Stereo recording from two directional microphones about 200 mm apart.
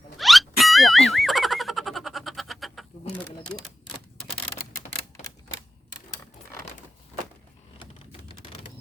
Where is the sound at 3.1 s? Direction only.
5° left (ahead or behind).